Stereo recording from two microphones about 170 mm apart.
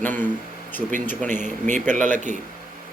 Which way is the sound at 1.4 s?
45° right (ahead or behind).